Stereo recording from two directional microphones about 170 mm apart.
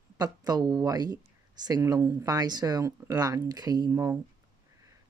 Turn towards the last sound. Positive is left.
turn(degrees=-15)  # may be behind; listen again after turning